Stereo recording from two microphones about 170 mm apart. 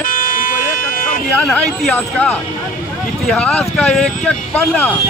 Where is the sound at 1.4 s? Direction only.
5° left (ahead or behind).